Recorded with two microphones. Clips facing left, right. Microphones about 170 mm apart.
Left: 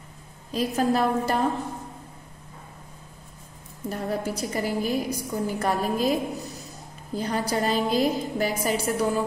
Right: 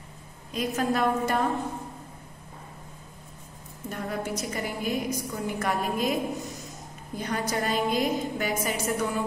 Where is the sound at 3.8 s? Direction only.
35° left (ahead or behind).